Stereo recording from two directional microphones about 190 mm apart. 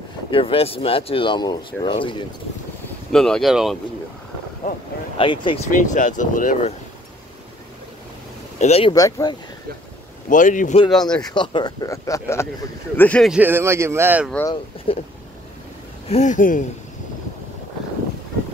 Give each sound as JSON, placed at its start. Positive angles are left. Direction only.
{"t": 0.3, "sound": "speech", "side_deg": 30}
{"t": 3.1, "sound": "speech", "side_deg": 5}
{"t": 5.1, "sound": "speech", "side_deg": 25}
{"t": 5.7, "sound": "speech", "side_deg": 45}
{"t": 8.5, "sound": "speech", "side_deg": 35}
{"t": 8.9, "sound": "speech", "side_deg": 20}
{"t": 10.3, "sound": "speech", "side_deg": 45}
{"t": 10.9, "sound": "speech", "side_deg": 5}
{"t": 11.3, "sound": "speech", "side_deg": 25}
{"t": 13.3, "sound": "speech", "side_deg": -10}
{"t": 14.9, "sound": "speech", "side_deg": 30}
{"t": 16.1, "sound": "speech", "side_deg": 40}